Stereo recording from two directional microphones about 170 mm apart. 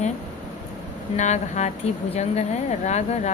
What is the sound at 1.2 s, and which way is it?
Speech, 45° left (ahead or behind).